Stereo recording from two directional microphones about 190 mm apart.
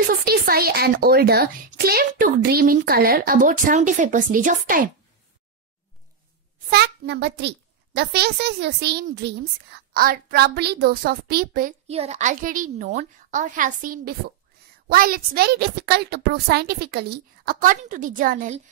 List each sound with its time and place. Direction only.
0.3 s speech: 55° right (ahead or behind)
6.7 s a child's voice: 60° right (ahead or behind)
11.9 s a child's voice: 35° right (ahead or behind)